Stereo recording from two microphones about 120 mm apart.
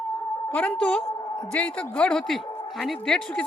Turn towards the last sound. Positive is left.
turn(degrees=5)  # may be behind; listen again after turning